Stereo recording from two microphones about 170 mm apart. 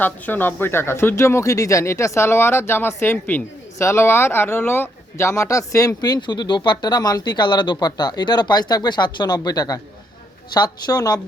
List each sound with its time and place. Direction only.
0.0 s a woman's voice: 10° left (ahead or behind)